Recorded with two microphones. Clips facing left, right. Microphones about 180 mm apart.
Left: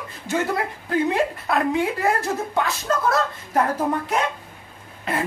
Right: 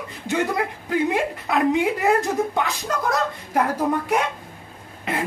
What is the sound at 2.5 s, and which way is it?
Speech, 15° right (ahead or behind).